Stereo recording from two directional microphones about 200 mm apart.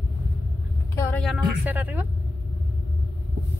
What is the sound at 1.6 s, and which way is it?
Speech, 10° right (ahead or behind).